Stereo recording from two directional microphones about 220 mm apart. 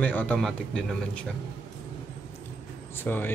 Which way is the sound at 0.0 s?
10° left (ahead or behind).